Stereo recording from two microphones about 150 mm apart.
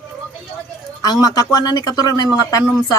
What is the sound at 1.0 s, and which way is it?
A woman's voice, 25° left (ahead or behind).